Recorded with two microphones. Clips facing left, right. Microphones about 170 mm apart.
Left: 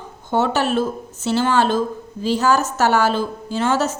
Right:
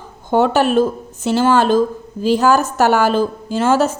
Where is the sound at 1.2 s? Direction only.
45° right (ahead or behind).